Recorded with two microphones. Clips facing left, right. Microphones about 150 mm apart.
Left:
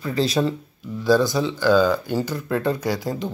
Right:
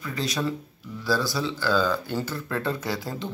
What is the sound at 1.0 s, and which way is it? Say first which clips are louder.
Speech: left 8 dB; 20° left (ahead or behind).